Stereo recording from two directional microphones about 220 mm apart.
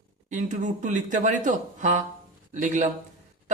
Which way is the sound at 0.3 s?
35° right (ahead or behind).